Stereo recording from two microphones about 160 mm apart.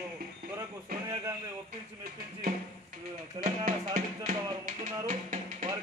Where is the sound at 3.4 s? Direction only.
30° right (ahead or behind).